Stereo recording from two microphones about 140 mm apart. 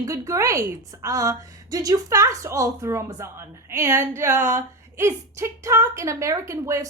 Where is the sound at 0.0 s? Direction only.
20° right (ahead or behind).